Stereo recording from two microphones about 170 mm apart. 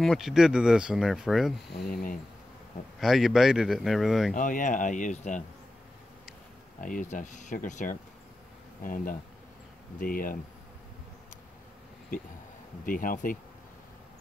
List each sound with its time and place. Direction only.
0.0 s speech: centre (ahead or behind)
3.0 s speech: centre (ahead or behind)
4.3 s speech: 50° left (ahead or behind)
6.8 s speech: 50° left (ahead or behind)
12.8 s speech: 55° left (ahead or behind)